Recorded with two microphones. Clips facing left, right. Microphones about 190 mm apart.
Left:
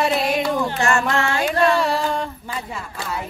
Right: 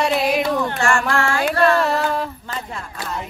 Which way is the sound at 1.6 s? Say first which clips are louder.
Right 2 dB; 5° right (ahead or behind).